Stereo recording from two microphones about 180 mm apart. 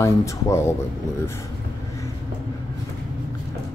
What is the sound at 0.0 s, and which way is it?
Speech, 15° left (ahead or behind).